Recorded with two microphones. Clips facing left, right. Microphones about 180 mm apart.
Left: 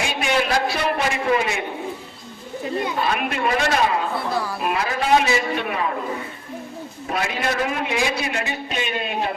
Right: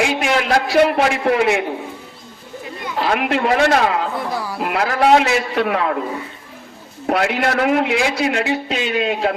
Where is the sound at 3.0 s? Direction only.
90° right.